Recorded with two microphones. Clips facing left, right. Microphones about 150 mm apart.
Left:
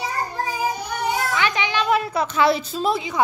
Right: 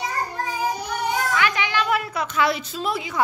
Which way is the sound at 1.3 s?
20° left (ahead or behind).